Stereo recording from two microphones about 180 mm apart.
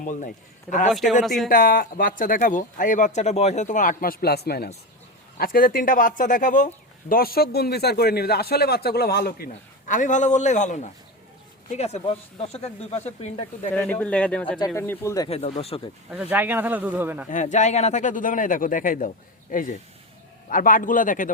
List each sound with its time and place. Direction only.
0.0 s speech: 45° left (ahead or behind)
1.2 s speech: centre (ahead or behind)
1.5 s a man's voice: 50° left (ahead or behind); by 13.4 s 35° left (ahead or behind)
13.7 s speech: 10° left (ahead or behind)
15.4 s speech: 35° left (ahead or behind)
16.1 s a man's voice: 10° right (ahead or behind)
17.2 s speech: 45° left (ahead or behind)